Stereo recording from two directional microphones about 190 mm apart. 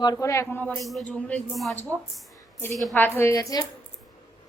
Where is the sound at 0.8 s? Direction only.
Centre (ahead or behind); by 3.7 s 20° left (ahead or behind).